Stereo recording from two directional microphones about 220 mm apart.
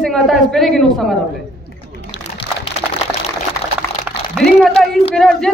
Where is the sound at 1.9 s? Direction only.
25° left (ahead or behind).